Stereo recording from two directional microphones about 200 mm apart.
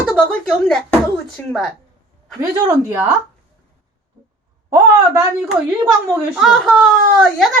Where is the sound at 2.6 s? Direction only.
10° right (ahead or behind).